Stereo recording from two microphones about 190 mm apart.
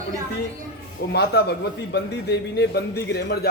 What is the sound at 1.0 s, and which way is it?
A man's voice, 55° left (ahead or behind).